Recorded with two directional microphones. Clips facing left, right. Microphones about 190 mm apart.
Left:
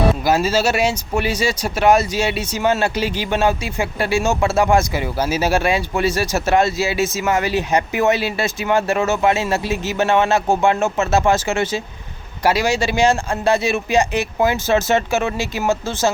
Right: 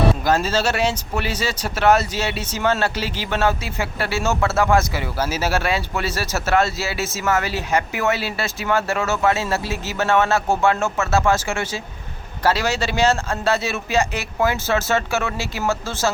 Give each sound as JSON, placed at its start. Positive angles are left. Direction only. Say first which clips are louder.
{"t": 0.3, "sound": "speech", "louder": "left 3 dB", "side_deg": 10}